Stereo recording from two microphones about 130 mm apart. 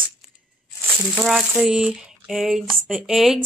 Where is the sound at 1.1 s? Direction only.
Centre (ahead or behind).